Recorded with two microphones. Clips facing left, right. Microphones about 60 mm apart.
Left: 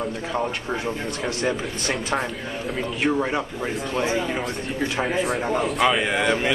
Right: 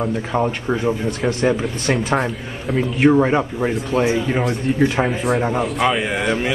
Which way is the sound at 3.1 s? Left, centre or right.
Centre.